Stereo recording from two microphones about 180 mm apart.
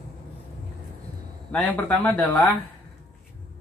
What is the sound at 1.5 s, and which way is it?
Speech, 10° left (ahead or behind).